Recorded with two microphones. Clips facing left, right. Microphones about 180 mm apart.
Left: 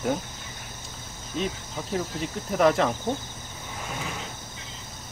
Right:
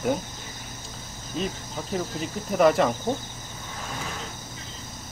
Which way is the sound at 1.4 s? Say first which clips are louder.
Even; centre (ahead or behind).